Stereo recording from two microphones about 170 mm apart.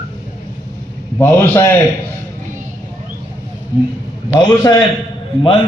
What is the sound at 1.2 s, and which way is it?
Speech, 10° left (ahead or behind).